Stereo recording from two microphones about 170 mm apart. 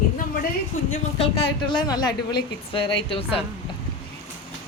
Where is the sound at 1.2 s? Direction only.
30° left (ahead or behind).